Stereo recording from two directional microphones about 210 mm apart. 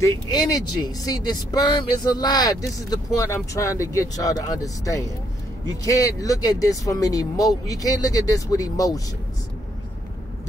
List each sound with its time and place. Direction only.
0.0 s speech: 20° left (ahead or behind)